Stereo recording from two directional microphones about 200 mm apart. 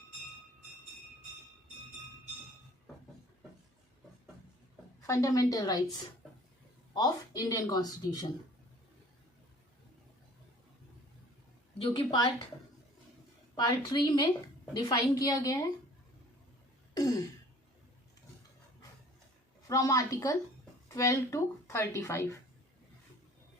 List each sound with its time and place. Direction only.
5.0 s speech: 15° left (ahead or behind)
6.9 s speech: 20° left (ahead or behind)
11.8 s speech: 25° left (ahead or behind)
13.6 s speech: 20° left (ahead or behind)
16.9 s throat clearing: 15° left (ahead or behind)
19.6 s a woman's voice: 15° left (ahead or behind)